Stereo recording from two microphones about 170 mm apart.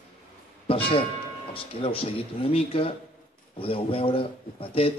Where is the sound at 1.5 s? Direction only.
35° left (ahead or behind).